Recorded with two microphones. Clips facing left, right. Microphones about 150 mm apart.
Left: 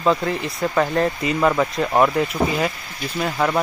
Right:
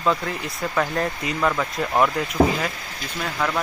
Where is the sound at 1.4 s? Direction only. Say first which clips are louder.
Left 4 dB; 20° left (ahead or behind).